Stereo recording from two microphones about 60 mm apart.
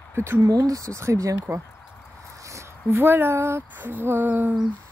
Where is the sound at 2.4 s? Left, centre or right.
Right.